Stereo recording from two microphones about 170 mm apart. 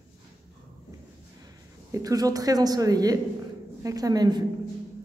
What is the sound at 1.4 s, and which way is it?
A woman's voice, 20° right (ahead or behind).